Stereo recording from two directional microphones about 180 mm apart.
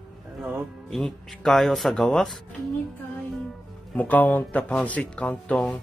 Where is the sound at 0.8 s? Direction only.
Centre (ahead or behind).